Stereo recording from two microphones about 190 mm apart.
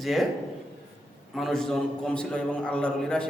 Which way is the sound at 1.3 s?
Centre (ahead or behind).